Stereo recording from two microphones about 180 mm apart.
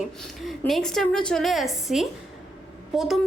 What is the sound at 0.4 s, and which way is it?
A woman's voice, 5° left (ahead or behind).